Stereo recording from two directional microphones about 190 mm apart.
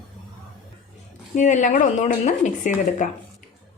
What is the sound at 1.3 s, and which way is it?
A woman's voice, 40° left (ahead or behind).